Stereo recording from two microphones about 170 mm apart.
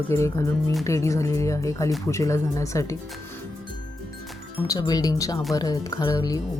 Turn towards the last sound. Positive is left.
turn(degrees=20)  # may be behind; listen again after turning